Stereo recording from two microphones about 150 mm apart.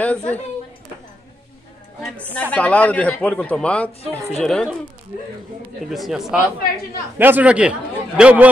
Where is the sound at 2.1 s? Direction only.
10° left (ahead or behind).